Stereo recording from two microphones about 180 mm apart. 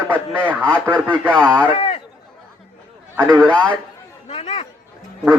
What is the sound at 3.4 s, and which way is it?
Speech, 5° left (ahead or behind).